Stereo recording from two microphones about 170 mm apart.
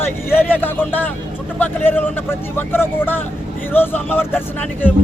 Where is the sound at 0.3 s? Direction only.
10° left (ahead or behind).